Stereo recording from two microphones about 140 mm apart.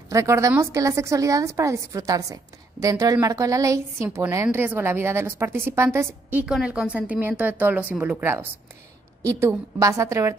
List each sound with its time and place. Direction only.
0.1 s a woman's voice: 20° right (ahead or behind)
6.4 s a woman's voice: 5° right (ahead or behind); by 10.3 s 20° right (ahead or behind)